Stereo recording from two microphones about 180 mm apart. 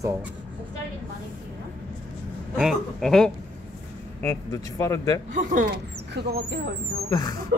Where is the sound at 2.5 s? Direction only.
Centre (ahead or behind).